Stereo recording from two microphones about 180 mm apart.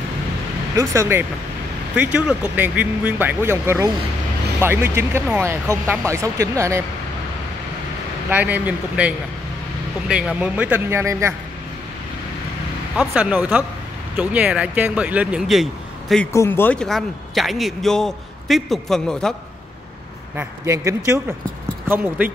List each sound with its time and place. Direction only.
0.7 s speech: 15° right (ahead or behind)
8.3 s speech: 10° right (ahead or behind)
12.9 s speech: 5° right (ahead or behind)
16.3 s a man's voice: 10° left (ahead or behind)
20.3 s speech: 15° right (ahead or behind)